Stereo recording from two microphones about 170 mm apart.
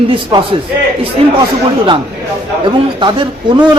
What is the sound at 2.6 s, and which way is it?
Speech, 30° right (ahead or behind).